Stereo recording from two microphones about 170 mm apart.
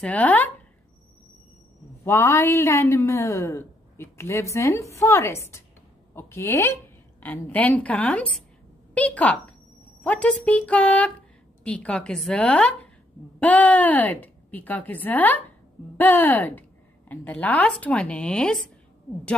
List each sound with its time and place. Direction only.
0.0 s a woman's voice: 10° left (ahead or behind)
2.0 s a woman's voice: 15° left (ahead or behind)